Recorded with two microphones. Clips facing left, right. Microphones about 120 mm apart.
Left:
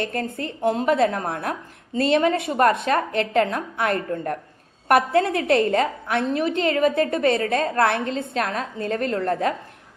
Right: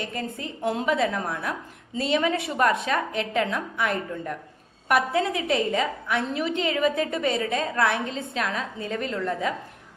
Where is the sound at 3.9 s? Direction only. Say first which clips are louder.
Left 5 dB; 55° left (ahead or behind).